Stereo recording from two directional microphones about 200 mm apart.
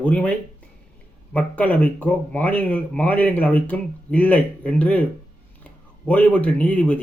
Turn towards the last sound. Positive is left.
turn(degrees=5)  # may be behind; listen again after turning